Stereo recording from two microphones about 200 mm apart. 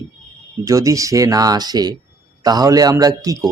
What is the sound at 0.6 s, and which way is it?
Speech, 15° right (ahead or behind).